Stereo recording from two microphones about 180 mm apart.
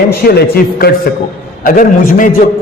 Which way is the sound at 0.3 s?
60° left (ahead or behind).